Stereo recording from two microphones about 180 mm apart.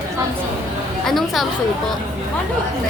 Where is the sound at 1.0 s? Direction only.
Centre (ahead or behind).